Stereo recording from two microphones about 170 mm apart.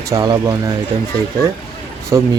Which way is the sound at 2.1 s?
15° right (ahead or behind).